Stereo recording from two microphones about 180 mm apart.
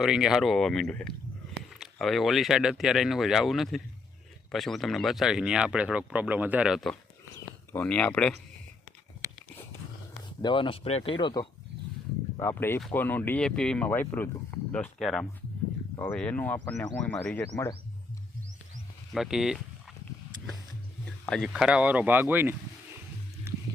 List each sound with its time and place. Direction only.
0.0 s speech: 5° right (ahead or behind)
7.7 s speech: 10° left (ahead or behind)
10.4 s speech: 25° left (ahead or behind)
12.4 s speech: 15° left (ahead or behind)
19.1 s speech: centre (ahead or behind)
21.2 s speech: centre (ahead or behind)